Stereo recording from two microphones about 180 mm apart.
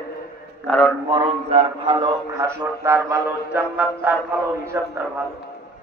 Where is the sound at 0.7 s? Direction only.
5° left (ahead or behind).